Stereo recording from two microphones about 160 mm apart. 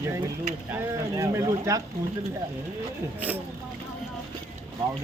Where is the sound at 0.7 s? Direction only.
20° right (ahead or behind).